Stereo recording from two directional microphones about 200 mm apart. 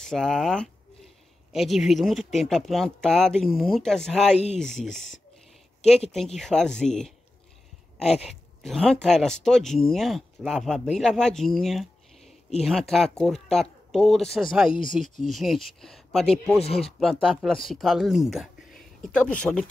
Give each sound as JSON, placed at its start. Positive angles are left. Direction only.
{"t": 0.0, "sound": "speech", "side_deg": 0}
{"t": 6.1, "sound": "speech", "side_deg": 0}
{"t": 8.3, "sound": "speech", "side_deg": 0}
{"t": 14.7, "sound": "speech", "side_deg": 25}
{"t": 15.2, "sound": "speech", "side_deg": 0}
{"t": 16.6, "sound": "speech", "side_deg": 30}
{"t": 17.0, "sound": "speech", "side_deg": 0}